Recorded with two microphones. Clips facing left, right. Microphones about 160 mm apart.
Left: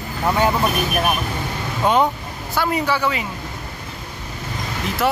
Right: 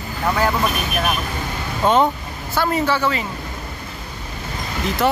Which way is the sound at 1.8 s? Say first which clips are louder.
Right 1 dB; 10° left (ahead or behind).